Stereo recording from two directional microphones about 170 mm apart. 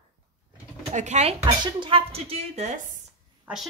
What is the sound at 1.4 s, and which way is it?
Speech, 25° right (ahead or behind).